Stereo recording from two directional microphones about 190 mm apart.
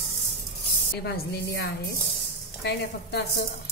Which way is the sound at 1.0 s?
60° left (ahead or behind).